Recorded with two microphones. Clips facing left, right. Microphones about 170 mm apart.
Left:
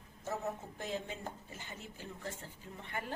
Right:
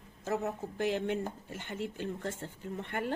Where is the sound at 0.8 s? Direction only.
70° right (ahead or behind).